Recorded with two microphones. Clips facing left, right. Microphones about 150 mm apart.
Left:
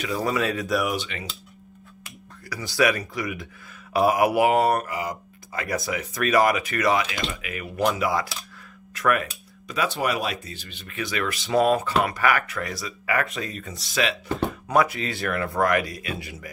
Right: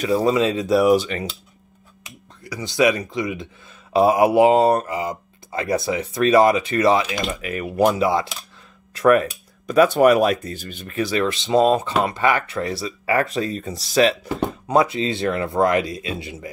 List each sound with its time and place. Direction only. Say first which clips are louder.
0.0 s speech: right 7 dB; 25° right (ahead or behind)
2.0 s speech: right 3 dB; 20° right (ahead or behind); by 7.9 s 40° right (ahead or behind)
7.9 s speech: right 5 dB; 25° right (ahead or behind)
8.9 s a sound: right 8 dB; 35° right (ahead or behind)
9.8 s speech: right 12 dB; 50° right (ahead or behind)
14.7 s speech: right 4 dB; 25° right (ahead or behind)